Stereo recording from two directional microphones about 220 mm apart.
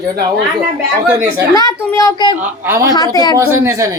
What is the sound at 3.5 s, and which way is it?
Speech, 10° right (ahead or behind).